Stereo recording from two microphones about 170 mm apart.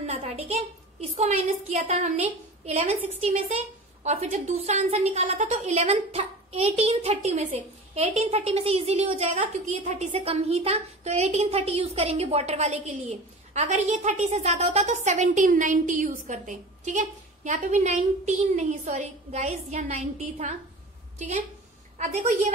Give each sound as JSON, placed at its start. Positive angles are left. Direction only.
{"t": 0.0, "sound": "a sound", "side_deg": -40}
{"t": 1.1, "sound": "a woman's voice", "side_deg": -40}
{"t": 21.9, "sound": "a woman's voice", "side_deg": -45}